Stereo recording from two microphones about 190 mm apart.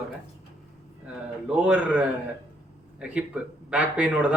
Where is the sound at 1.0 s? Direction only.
5° right (ahead or behind).